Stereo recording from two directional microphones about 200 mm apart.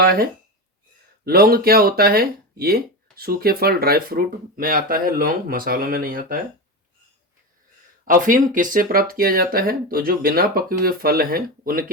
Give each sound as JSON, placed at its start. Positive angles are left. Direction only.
{"t": 0.0, "sound": "speech", "side_deg": -50}
{"t": 8.0, "sound": "speech", "side_deg": -40}